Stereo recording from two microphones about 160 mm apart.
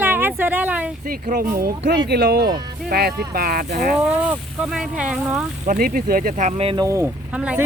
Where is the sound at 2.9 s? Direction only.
70° right (ahead or behind).